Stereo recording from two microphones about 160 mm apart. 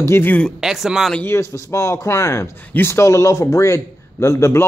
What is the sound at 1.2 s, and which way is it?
Speech, 15° left (ahead or behind).